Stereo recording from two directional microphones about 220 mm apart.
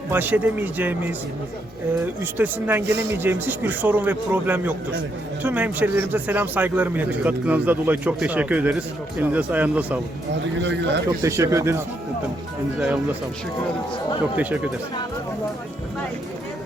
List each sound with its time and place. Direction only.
0.1 s a man's voice: 10° right (ahead or behind)
2.4 s a man's voice: 10° right (ahead or behind)
10.6 s speech: 55° right (ahead or behind)
11.2 s a man's voice: 15° right (ahead or behind)
14.3 s a man's voice: 5° right (ahead or behind)